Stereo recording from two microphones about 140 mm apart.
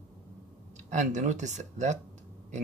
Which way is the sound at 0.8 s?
60° right (ahead or behind).